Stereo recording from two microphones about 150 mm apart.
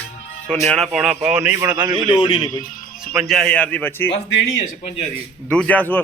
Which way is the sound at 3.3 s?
5° left (ahead or behind).